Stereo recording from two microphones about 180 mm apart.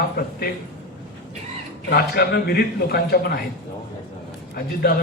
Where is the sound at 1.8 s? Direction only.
60° left (ahead or behind).